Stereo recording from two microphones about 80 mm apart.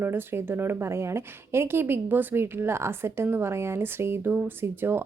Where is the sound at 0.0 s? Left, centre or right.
Right.